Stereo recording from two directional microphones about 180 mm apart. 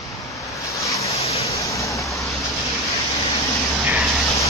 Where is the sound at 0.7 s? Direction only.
15° left (ahead or behind).